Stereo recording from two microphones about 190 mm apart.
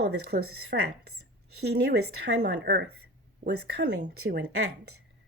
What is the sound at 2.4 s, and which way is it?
Speech, 65° right (ahead or behind).